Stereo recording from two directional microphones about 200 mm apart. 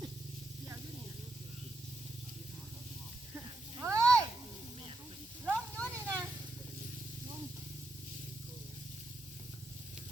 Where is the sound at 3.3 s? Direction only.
15° right (ahead or behind).